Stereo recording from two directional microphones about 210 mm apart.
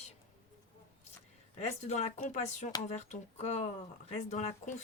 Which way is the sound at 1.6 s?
30° left (ahead or behind).